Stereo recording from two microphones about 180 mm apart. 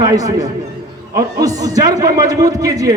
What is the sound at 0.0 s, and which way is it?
A man's voice, 20° right (ahead or behind).